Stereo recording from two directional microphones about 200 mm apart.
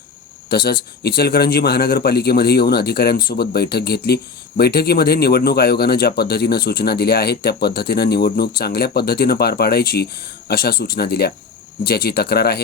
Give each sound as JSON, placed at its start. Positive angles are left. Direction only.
{"t": 0.5, "sound": "a man's voice", "side_deg": 50}